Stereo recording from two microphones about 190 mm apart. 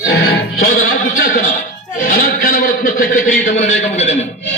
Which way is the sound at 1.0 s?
45° left (ahead or behind).